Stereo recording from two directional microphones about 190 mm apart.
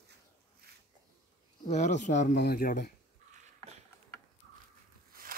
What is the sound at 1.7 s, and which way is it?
Speech, 40° left (ahead or behind).